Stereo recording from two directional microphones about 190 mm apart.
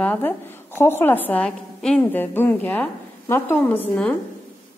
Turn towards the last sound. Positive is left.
turn(degrees=10)  # may be behind; listen again after turning